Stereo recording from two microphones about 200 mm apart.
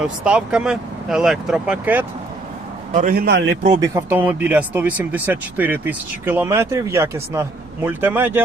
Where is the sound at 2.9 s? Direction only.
40° right (ahead or behind).